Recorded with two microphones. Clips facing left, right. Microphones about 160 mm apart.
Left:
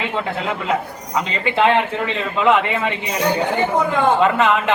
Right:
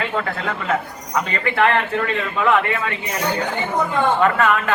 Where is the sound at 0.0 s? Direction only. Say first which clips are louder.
Left 1 dB; 20° left (ahead or behind).